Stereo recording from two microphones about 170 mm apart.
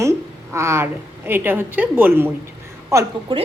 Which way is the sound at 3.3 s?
30° right (ahead or behind).